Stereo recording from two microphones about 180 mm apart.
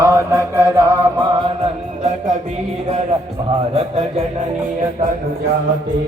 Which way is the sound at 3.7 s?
35° right (ahead or behind).